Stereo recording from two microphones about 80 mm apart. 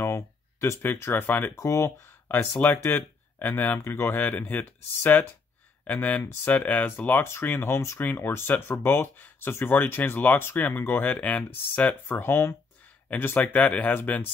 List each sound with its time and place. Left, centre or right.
0.0 s a sound: left
0.8 s speech: left
1.6 s speech: left
2.6 s speech: left
12.1 s speech: left